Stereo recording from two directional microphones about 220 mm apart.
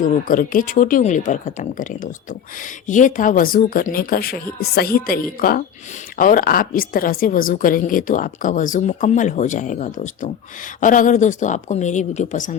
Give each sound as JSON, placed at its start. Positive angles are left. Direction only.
{"t": 0.0, "sound": "a woman's voice", "side_deg": 40}